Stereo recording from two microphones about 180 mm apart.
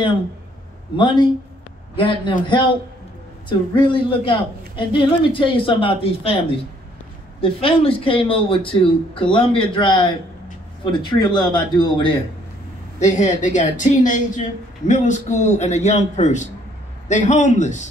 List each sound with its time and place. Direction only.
0.9 s a man's voice: 25° left (ahead or behind)
7.4 s a man's voice: 30° left (ahead or behind)
13.0 s a woman's voice: 40° left (ahead or behind)